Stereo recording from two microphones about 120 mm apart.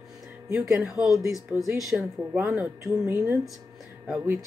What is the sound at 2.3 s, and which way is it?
Speech, 15° right (ahead or behind).